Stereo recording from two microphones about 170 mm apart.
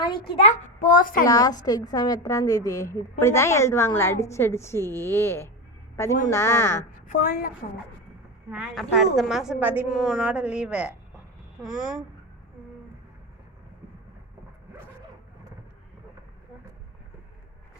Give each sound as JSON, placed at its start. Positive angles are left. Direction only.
{"t": 0.0, "sound": "a child's voice", "side_deg": 35}
{"t": 0.8, "sound": "a woman's voice", "side_deg": 55}
{"t": 1.2, "sound": "a woman's voice", "side_deg": 20}
{"t": 7.1, "sound": "a woman's voice", "side_deg": 55}
{"t": 8.4, "sound": "a woman's voice", "side_deg": 0}